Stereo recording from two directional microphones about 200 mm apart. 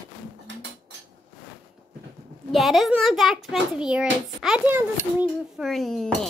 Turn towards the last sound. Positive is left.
turn(degrees=0)  # may be behind; listen again after turning